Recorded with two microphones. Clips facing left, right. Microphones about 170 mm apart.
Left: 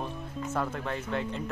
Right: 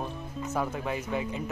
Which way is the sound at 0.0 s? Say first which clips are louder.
Even; 5° right (ahead or behind).